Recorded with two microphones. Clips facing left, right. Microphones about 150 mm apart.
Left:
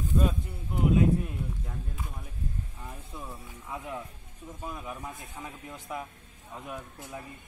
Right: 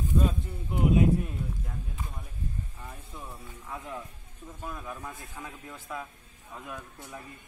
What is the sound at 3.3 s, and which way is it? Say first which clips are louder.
Speech: right 1 dB; 5° left (ahead or behind).